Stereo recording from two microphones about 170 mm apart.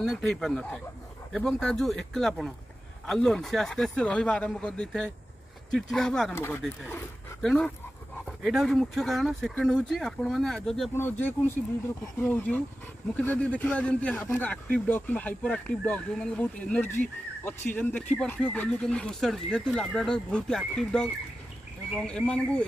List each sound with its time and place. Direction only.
0.0 s speech: 5° left (ahead or behind)
6.3 s speech: 15° left (ahead or behind)
6.6 s speech: centre (ahead or behind)